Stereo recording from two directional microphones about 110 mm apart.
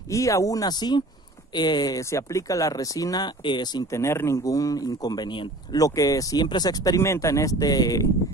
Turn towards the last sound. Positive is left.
turn(degrees=35)  # may be behind; listen again after turning